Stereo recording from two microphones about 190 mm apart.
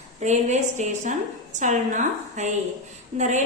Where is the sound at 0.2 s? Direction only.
40° right (ahead or behind).